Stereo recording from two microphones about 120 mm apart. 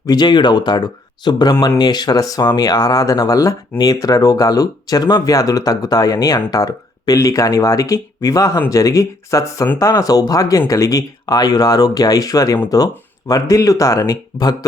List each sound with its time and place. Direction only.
0.0 s speech: 35° left (ahead or behind)